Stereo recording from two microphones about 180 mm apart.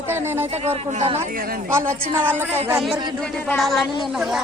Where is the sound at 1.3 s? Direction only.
55° right (ahead or behind).